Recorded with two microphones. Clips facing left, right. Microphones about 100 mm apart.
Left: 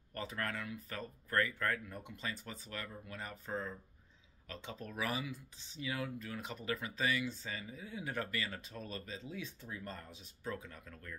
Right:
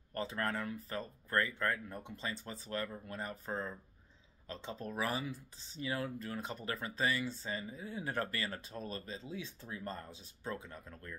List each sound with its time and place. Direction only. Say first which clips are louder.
0.1 s speech: right 4 dB; 30° right (ahead or behind)